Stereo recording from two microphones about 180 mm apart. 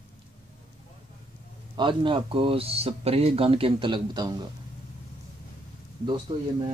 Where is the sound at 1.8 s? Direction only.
25° right (ahead or behind).